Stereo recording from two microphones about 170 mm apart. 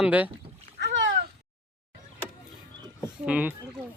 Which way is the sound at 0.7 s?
85° right.